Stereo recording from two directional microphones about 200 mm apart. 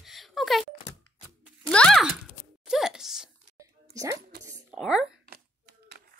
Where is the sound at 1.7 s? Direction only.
5° left (ahead or behind).